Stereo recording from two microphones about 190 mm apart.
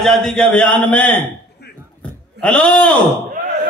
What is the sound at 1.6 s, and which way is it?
Beatboxing, 60° left (ahead or behind).